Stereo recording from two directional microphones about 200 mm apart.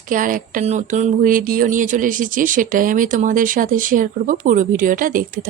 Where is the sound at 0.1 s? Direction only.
40° right (ahead or behind).